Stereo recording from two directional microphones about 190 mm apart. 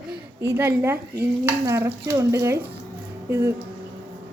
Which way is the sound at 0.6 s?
10° right (ahead or behind).